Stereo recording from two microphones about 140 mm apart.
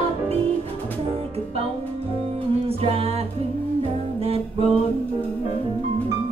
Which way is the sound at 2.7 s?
45° right (ahead or behind).